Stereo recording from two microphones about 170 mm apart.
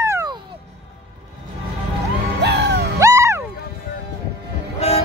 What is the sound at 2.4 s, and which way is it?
Music, 80° right.